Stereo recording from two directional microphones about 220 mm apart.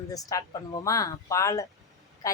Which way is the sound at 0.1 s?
15° left (ahead or behind).